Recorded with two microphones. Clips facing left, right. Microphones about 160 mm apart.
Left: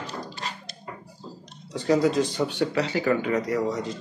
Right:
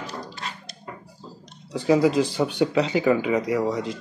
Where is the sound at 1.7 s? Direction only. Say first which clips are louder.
Right 2 dB; 10° right (ahead or behind).